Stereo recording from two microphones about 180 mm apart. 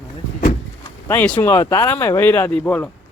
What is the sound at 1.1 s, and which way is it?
Speech, 10° left (ahead or behind).